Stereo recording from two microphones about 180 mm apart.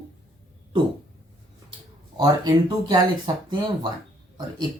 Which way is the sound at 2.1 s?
20° right (ahead or behind).